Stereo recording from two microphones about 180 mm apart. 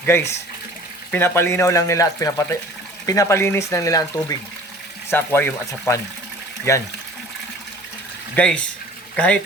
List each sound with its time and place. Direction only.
0.0 s speech: 15° left (ahead or behind)
8.4 s speech: 5° left (ahead or behind)